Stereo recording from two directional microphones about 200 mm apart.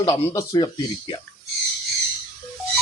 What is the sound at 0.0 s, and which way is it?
Speech, 20° left (ahead or behind).